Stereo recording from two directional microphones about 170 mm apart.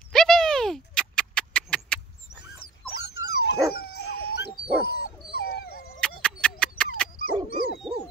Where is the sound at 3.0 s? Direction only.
75° left (ahead or behind).